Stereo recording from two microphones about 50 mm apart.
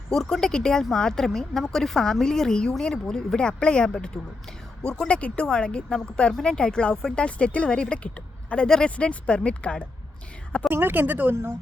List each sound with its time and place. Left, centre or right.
0.1 s speech: centre; by 8.6 s left
8.6 s speech: centre
9.0 s speech: left
10.7 s speech: right